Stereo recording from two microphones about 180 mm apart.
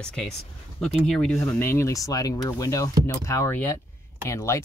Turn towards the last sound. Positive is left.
turn(degrees=15)  # may be behind; listen again after turning